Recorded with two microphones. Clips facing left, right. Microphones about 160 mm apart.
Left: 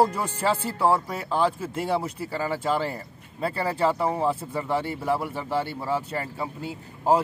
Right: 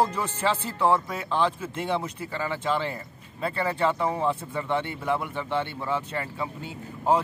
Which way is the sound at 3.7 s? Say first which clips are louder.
Left 2 dB; 5° left (ahead or behind).